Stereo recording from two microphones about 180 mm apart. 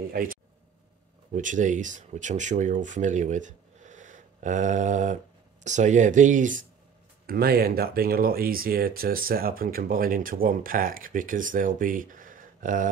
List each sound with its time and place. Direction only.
0.1 s speech: 50° right (ahead or behind)
7.2 s speech: 55° right (ahead or behind)